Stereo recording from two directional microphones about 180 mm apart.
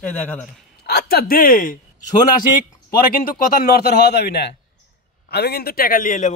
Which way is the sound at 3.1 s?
55° left (ahead or behind).